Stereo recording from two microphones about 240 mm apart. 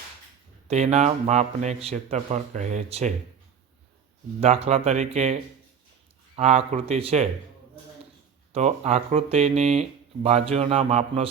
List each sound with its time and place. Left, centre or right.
0.7 s speech: right
4.4 s speech: right
8.5 s speech: right